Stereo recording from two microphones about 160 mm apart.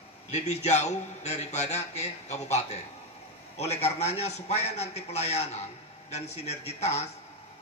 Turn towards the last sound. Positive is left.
turn(degrees=40)  # may be behind; listen again after turning